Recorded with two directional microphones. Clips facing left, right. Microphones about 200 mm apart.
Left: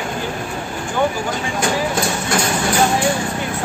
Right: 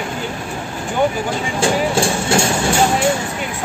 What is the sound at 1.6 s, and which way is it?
Speech, 30° right (ahead or behind).